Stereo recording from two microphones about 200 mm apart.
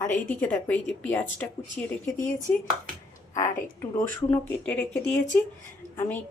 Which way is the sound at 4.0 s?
10° left (ahead or behind).